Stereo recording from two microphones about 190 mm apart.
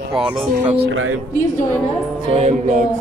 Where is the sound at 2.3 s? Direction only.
35° right (ahead or behind).